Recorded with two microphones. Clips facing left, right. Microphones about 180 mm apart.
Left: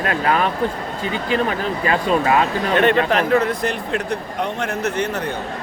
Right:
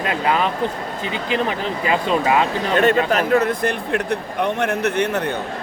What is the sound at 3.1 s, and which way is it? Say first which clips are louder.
Speech: even; 50° right (ahead or behind).